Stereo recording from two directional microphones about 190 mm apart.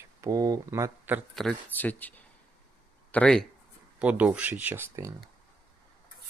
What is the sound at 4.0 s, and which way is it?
Speech, 5° right (ahead or behind).